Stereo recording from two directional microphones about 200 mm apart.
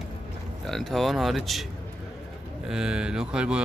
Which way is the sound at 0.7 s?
Centre (ahead or behind).